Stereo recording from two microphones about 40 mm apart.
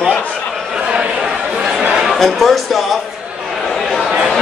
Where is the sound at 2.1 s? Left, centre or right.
Centre.